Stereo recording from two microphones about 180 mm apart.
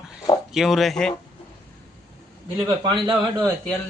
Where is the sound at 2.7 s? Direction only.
25° right (ahead or behind).